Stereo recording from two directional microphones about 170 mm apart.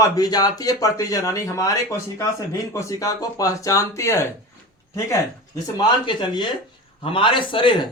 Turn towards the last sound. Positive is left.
turn(degrees=30)  # may be behind; listen again after turning